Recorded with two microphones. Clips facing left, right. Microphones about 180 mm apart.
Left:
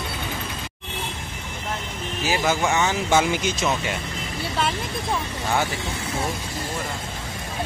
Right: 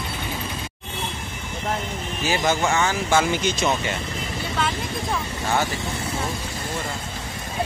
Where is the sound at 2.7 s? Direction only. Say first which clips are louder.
Even; 20° left (ahead or behind).